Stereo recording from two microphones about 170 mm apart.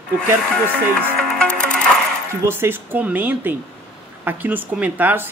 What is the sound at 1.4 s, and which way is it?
Music, 5° left (ahead or behind).